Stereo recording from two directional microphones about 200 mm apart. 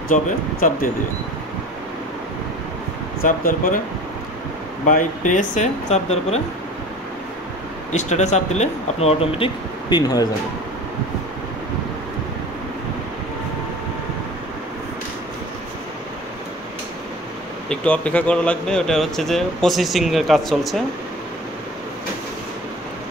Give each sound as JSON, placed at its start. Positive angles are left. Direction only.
{"t": 0.1, "sound": "speech", "side_deg": 40}
{"t": 3.2, "sound": "speech", "side_deg": 45}
{"t": 4.8, "sound": "speech", "side_deg": 40}
{"t": 7.9, "sound": "speech", "side_deg": 35}
{"t": 17.6, "sound": "speech", "side_deg": 5}